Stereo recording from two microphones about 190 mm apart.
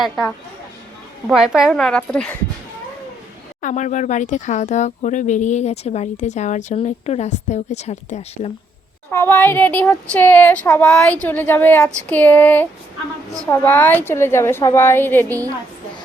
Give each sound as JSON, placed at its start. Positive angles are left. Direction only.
{"t": 0.0, "sound": "a woman's voice", "side_deg": 0}
{"t": 3.6, "sound": "speech", "side_deg": 40}
{"t": 9.1, "sound": "speech", "side_deg": 10}